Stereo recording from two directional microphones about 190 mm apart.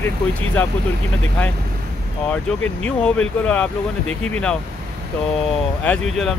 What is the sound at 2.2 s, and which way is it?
Speech, 5° left (ahead or behind).